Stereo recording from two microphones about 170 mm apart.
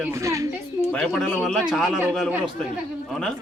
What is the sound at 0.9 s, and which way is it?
A man's voice, 5° left (ahead or behind).